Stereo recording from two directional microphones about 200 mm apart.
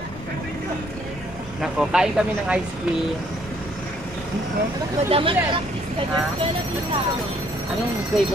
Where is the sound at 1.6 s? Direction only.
Centre (ahead or behind).